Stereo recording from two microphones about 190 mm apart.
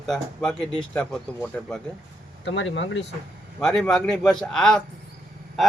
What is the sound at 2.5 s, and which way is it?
Speech, 75° left (ahead or behind).